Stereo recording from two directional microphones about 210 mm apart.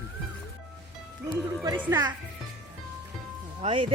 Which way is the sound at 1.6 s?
15° right (ahead or behind).